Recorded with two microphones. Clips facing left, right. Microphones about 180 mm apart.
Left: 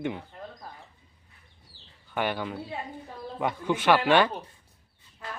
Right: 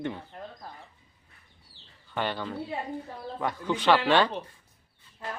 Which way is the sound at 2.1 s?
10° left (ahead or behind).